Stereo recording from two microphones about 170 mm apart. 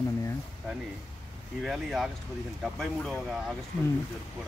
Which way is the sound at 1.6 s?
Centre (ahead or behind).